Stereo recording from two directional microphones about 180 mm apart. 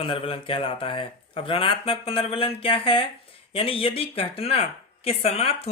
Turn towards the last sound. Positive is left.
turn(degrees=35)  # may be behind; listen again after turning